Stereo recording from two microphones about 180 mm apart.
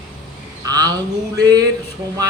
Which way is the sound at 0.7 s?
20° right (ahead or behind).